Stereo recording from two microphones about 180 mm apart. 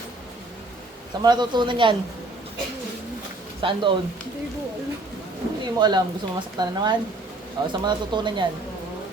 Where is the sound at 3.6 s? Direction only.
30° right (ahead or behind).